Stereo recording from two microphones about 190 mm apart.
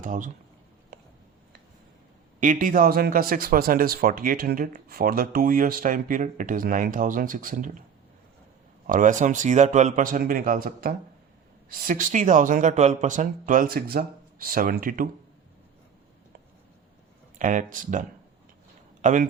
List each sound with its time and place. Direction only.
0.0 s speech: 45° right (ahead or behind)
2.4 s speech: 45° right (ahead or behind)
8.9 s speech: 45° right (ahead or behind)
17.3 s speech: 40° right (ahead or behind)
19.0 s speech: 40° right (ahead or behind)